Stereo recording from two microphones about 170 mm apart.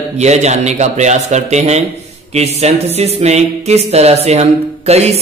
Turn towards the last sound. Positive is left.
turn(degrees=-40)  # may be behind; listen again after turning